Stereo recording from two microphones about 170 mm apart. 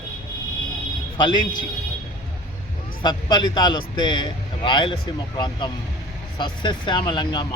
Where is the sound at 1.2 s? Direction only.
25° left (ahead or behind).